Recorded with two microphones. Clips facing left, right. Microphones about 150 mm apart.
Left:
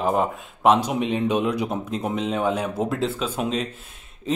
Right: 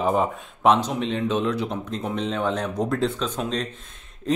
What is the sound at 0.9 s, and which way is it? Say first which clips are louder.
Speech: left 2 dB; 15° left (ahead or behind).